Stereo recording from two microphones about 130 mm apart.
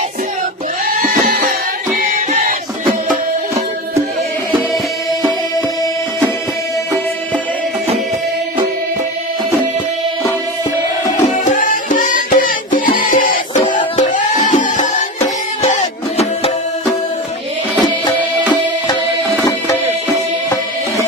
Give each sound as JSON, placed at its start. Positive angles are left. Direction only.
{"t": 0.9, "sound": "music", "side_deg": -90}
{"t": 11.2, "sound": "music", "side_deg": 75}
{"t": 13.7, "sound": "music", "side_deg": 80}
{"t": 15.7, "sound": "music", "side_deg": 55}